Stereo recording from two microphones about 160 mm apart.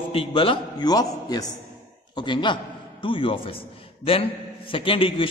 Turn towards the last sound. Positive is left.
turn(degrees=35)  # may be behind; listen again after turning